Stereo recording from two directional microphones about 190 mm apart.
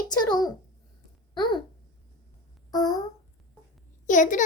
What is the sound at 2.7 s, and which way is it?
Speech, 20° left (ahead or behind).